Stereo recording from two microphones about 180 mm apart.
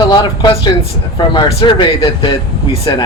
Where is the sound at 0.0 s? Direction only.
30° left (ahead or behind).